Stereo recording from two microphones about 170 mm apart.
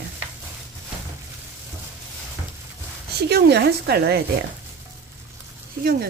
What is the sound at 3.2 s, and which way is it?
Speech, 75° right (ahead or behind).